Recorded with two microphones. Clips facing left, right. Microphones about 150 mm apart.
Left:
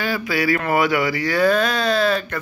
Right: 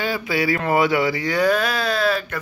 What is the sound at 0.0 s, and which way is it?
Speech, 20° right (ahead or behind).